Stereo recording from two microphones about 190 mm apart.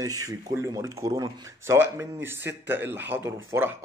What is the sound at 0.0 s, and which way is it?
A man's voice, 20° right (ahead or behind).